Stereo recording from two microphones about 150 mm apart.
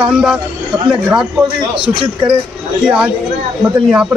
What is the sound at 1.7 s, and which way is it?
Speech, 35° right (ahead or behind).